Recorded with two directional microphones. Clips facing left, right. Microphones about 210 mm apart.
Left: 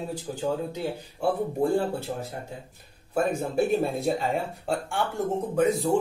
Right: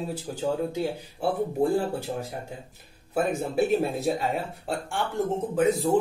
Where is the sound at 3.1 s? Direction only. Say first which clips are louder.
Even; 5° right (ahead or behind).